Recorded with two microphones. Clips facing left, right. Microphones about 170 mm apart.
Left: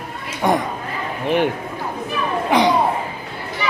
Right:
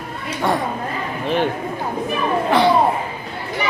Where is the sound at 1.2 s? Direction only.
15° left (ahead or behind).